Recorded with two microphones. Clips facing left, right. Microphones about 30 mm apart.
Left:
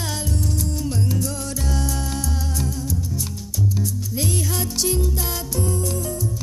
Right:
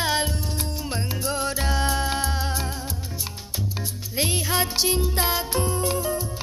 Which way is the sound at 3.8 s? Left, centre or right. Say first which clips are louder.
Left 2 dB; right.